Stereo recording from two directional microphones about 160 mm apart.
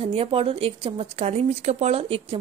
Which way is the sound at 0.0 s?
35° right (ahead or behind).